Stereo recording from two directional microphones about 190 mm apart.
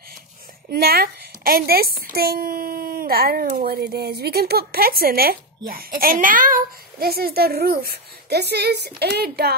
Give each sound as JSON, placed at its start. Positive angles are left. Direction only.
{"t": 0.7, "sound": "a woman's voice", "side_deg": -55}